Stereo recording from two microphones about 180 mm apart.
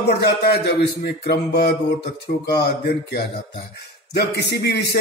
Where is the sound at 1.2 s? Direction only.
60° left (ahead or behind).